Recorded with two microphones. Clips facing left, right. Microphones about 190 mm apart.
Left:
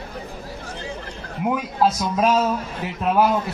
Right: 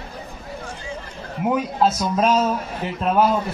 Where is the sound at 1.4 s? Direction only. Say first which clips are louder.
Right 1 dB; centre (ahead or behind).